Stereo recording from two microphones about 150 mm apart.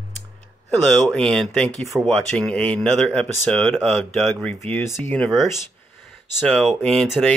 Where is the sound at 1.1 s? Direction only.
Centre (ahead or behind).